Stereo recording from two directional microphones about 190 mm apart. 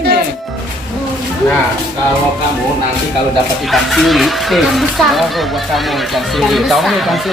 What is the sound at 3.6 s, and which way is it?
Speech, centre (ahead or behind).